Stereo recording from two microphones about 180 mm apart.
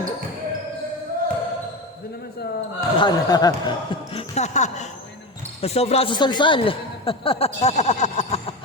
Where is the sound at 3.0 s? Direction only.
20° left (ahead or behind).